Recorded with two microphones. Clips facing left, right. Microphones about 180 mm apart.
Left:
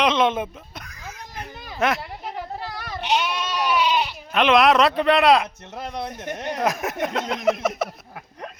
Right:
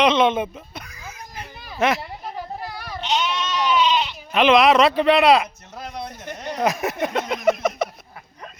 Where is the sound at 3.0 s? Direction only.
10° left (ahead or behind).